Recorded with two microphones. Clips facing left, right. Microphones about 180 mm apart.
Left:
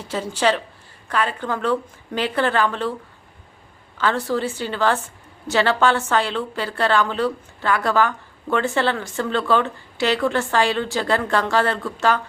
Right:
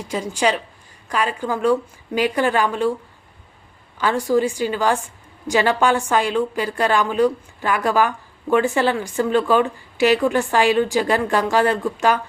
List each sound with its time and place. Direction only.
0.0 s a woman's voice: 10° right (ahead or behind)
3.9 s a woman's voice: 10° right (ahead or behind)